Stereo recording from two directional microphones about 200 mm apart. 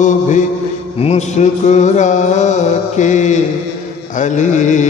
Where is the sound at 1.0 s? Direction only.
35° left (ahead or behind).